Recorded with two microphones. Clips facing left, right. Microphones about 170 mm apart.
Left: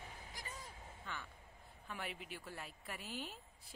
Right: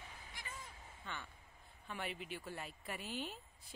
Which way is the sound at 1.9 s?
Centre (ahead or behind).